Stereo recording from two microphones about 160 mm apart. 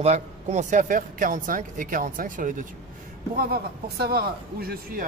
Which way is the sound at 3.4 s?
75° right (ahead or behind).